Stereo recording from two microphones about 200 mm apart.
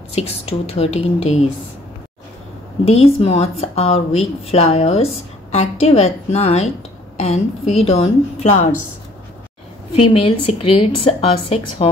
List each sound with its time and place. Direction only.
0.1 s speech: 30° left (ahead or behind)
2.8 s speech: 30° left (ahead or behind)
9.9 s a woman's voice: 25° left (ahead or behind)